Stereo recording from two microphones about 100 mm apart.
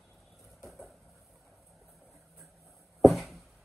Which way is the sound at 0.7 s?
Centre (ahead or behind).